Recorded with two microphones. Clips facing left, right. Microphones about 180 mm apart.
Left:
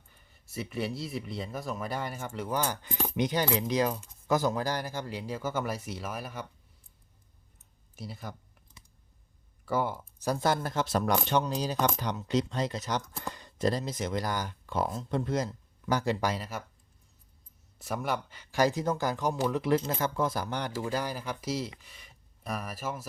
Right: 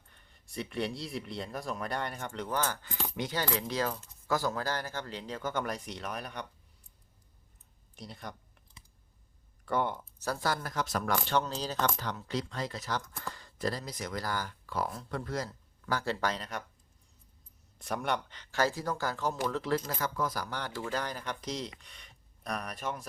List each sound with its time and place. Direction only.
0.1 s speech: 5° left (ahead or behind)
7.9 s speech: 5° left (ahead or behind)
9.6 s speech: 5° left (ahead or behind)
17.7 s speech: 5° left (ahead or behind)
19.8 s speech: 25° left (ahead or behind); by 23.0 s 5° left (ahead or behind)